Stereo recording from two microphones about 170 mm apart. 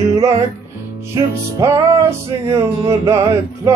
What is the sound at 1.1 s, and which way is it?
Music, 15° right (ahead or behind).